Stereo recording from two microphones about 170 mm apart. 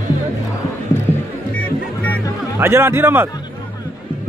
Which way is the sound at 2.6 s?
15° right (ahead or behind).